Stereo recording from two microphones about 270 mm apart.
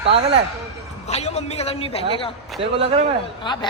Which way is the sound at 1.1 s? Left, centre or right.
Left.